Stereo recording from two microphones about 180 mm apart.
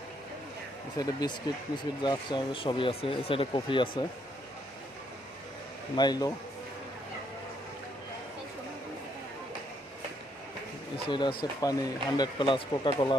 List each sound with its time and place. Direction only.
0.9 s speech: 20° left (ahead or behind)
6.0 s speech: 20° left (ahead or behind)
10.9 s speech: 25° left (ahead or behind)